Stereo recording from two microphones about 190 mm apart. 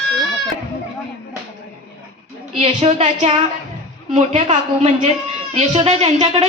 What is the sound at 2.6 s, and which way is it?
A woman's voice, 30° right (ahead or behind).